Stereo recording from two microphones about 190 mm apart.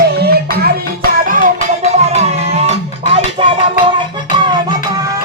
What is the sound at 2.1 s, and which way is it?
Music, 30° right (ahead or behind).